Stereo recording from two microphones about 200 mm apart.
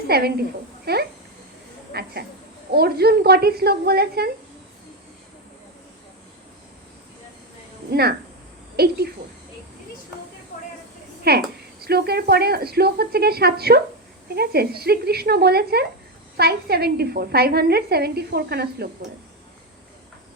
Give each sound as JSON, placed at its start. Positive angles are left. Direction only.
{"t": 0.1, "sound": "speech", "side_deg": -50}
{"t": 7.9, "sound": "speech", "side_deg": -50}
{"t": 11.2, "sound": "speech", "side_deg": -50}